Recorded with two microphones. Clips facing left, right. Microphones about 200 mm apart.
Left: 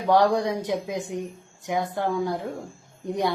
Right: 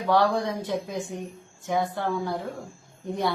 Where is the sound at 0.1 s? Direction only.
20° left (ahead or behind).